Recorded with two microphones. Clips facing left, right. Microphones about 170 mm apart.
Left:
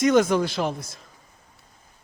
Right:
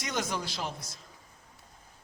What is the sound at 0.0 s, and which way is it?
Speech, 55° left (ahead or behind).